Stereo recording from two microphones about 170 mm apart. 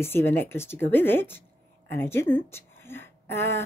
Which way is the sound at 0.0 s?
15° left (ahead or behind).